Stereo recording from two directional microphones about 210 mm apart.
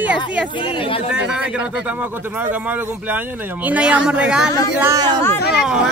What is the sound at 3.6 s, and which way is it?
Speech, 5° right (ahead or behind).